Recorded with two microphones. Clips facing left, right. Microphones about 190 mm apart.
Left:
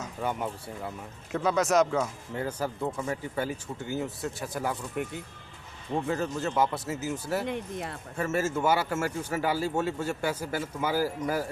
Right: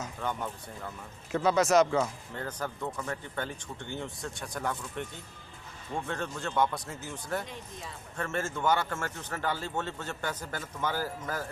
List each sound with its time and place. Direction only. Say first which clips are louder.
0.2 s speech: left 5 dB; 10° left (ahead or behind)
1.3 s speech: right 1 dB; centre (ahead or behind)
7.4 s speech: left 10 dB; 65° left (ahead or behind)
8.2 s speech: left 5 dB; 5° left (ahead or behind)